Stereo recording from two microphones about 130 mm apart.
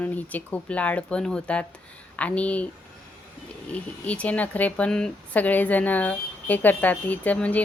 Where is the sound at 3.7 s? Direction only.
10° left (ahead or behind).